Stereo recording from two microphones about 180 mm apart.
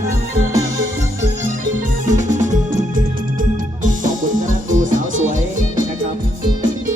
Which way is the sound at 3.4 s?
45° right (ahead or behind).